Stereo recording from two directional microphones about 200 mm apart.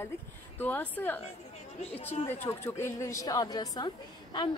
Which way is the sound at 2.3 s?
10° left (ahead or behind).